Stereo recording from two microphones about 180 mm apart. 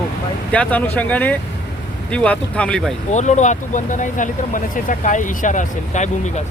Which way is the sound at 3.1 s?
40° left (ahead or behind).